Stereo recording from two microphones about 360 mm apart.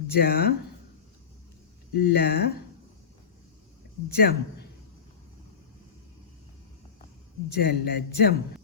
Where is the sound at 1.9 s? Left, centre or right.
Left.